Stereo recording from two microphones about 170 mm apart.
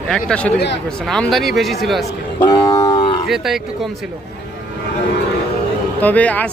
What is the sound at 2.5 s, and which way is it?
Livestock, 25° left (ahead or behind).